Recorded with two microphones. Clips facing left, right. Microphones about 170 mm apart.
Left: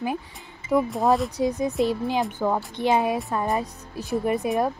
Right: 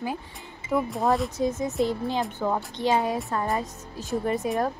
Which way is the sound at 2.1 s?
15° left (ahead or behind).